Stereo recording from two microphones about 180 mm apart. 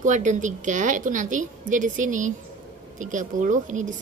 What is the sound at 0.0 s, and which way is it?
A woman's voice, 45° right (ahead or behind).